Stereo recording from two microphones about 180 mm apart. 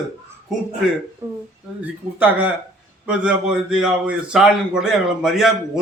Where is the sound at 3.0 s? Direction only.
5° right (ahead or behind).